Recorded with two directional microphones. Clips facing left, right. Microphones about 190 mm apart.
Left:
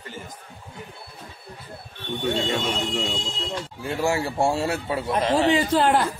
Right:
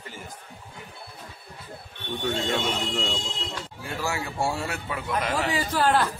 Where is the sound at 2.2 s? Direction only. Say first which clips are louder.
Left 2 dB; 10° left (ahead or behind).